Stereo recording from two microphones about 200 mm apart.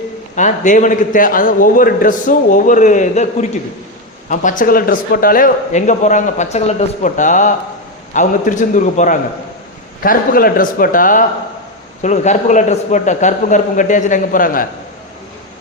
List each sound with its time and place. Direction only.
0.3 s a man's voice: 40° left (ahead or behind)